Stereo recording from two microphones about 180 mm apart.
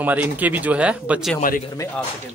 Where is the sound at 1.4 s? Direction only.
50° left (ahead or behind).